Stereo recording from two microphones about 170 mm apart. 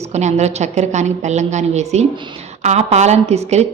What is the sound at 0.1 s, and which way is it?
A woman's voice, 40° right (ahead or behind).